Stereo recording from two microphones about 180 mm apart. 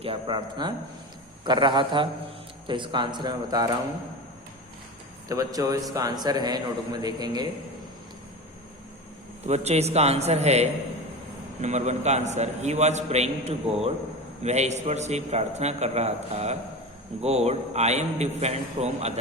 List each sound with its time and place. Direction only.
0.0 s a man's voice: 30° right (ahead or behind)
5.3 s a man's voice: 20° right (ahead or behind)
9.5 s a man's voice: 35° right (ahead or behind)